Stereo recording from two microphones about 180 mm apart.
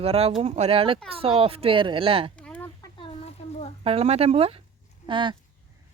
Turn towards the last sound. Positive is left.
turn(degrees=-25)  # may be behind; listen again after turning